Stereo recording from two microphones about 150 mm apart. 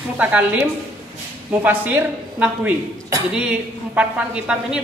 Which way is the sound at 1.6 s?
10° right (ahead or behind).